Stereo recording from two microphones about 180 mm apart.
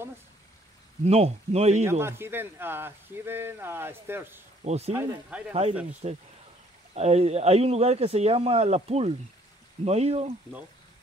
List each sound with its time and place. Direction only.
1.0 s a man's voice: 35° right (ahead or behind)
1.9 s speech: 15° right (ahead or behind)
4.6 s a man's voice: 35° right (ahead or behind)
4.9 s speech: 15° right (ahead or behind)
5.5 s a man's voice: 35° right (ahead or behind)